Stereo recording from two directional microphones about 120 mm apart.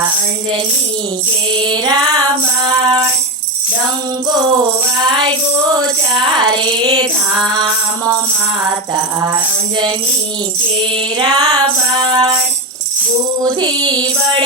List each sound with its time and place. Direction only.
1.5 s music: 40° right (ahead or behind)
5.0 s music: 40° right (ahead or behind)
10.9 s music: 40° right (ahead or behind)
13.4 s music: 35° right (ahead or behind)